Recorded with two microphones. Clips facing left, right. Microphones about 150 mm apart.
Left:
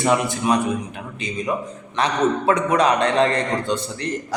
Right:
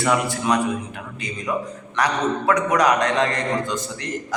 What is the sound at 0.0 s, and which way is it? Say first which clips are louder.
Speech: left 2 dB; 20° left (ahead or behind).